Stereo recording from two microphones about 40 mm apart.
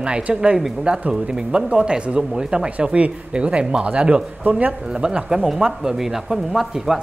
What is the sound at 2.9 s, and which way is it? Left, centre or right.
Speech, right.